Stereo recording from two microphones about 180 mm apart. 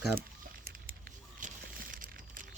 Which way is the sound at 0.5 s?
55° right (ahead or behind).